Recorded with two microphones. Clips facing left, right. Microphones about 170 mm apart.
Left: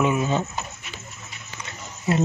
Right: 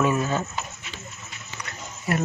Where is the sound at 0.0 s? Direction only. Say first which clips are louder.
Left 1 dB; 15° left (ahead or behind).